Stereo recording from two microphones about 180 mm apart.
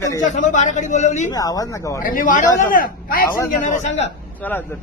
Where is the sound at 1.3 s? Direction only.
20° left (ahead or behind).